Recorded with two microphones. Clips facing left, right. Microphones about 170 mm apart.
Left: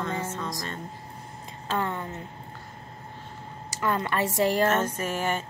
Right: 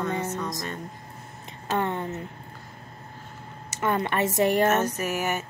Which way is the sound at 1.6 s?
25° right (ahead or behind).